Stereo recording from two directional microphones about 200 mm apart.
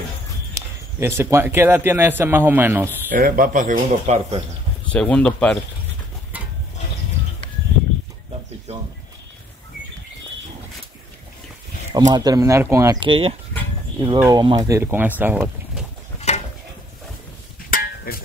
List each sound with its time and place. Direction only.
0.6 s a man's voice: 15° right (ahead or behind)
3.1 s speech: 45° right (ahead or behind)
4.9 s speech: 5° left (ahead or behind)
6.3 s stir: 5° right (ahead or behind)
12.1 s a man's voice: 20° right (ahead or behind)
13.1 s speech: 30° right (ahead or behind)
13.9 s a man's voice: 20° right (ahead or behind)
16.3 s a sound: 35° left (ahead or behind)
17.6 s a sound: 45° left (ahead or behind)